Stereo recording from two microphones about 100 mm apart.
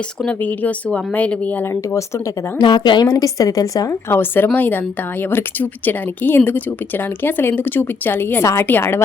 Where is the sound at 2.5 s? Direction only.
50° left (ahead or behind).